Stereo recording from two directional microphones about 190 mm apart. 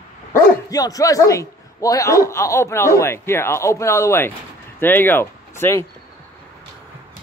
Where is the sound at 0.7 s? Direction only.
20° left (ahead or behind).